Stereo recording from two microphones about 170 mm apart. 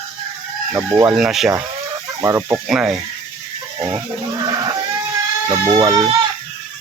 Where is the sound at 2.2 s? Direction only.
15° right (ahead or behind).